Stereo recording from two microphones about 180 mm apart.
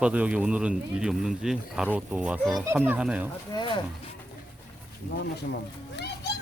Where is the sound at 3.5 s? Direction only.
25° left (ahead or behind).